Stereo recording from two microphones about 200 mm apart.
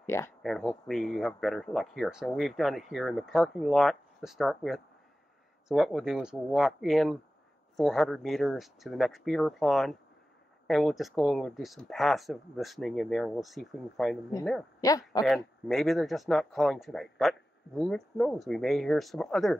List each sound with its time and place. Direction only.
0.0 s speech: 15° left (ahead or behind)
0.4 s speech: centre (ahead or behind)
14.8 s speech: 15° left (ahead or behind)
15.2 s speech: centre (ahead or behind)